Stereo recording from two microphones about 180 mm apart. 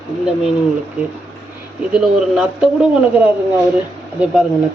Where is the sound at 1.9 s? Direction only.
5° right (ahead or behind).